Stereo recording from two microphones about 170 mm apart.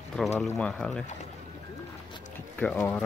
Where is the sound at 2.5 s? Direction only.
10° left (ahead or behind).